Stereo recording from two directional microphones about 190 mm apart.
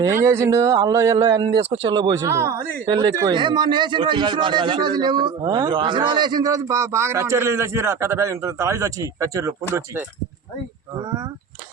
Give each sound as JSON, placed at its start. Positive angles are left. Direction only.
{"t": 0.0, "sound": "speech", "side_deg": -15}